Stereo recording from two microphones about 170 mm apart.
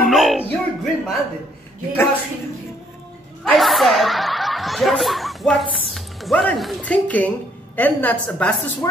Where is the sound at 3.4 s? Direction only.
Centre (ahead or behind).